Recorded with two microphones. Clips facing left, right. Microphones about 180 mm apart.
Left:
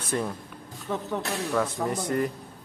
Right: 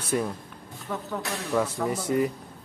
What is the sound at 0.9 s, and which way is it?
Speech, 20° left (ahead or behind).